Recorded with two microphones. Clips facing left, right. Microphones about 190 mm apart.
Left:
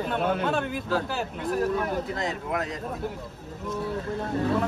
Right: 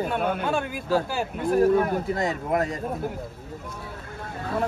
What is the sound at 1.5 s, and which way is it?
Speech, 50° right (ahead or behind).